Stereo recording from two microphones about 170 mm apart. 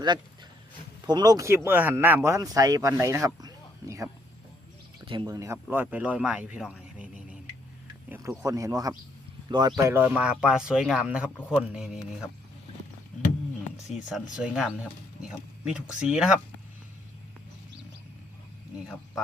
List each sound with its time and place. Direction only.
1.0 s speech: 25° right (ahead or behind); by 7.1 s 5° right (ahead or behind)
8.4 s speech: 20° right (ahead or behind); by 12.3 s 5° right (ahead or behind)
13.9 s speech: centre (ahead or behind)